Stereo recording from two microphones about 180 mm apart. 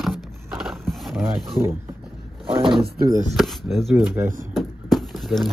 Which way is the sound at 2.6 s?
25° right (ahead or behind).